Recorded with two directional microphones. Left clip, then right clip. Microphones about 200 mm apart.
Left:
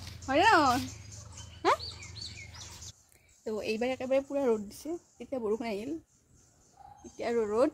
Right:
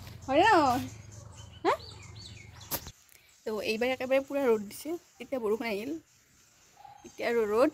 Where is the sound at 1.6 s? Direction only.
15° left (ahead or behind).